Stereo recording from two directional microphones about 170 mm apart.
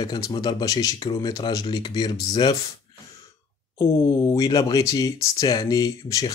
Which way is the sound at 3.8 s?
20° left (ahead or behind).